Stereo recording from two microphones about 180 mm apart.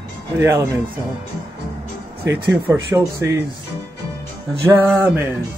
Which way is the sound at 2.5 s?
15° right (ahead or behind).